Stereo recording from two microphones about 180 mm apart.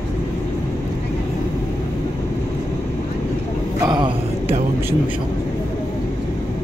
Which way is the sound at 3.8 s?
25° right (ahead or behind).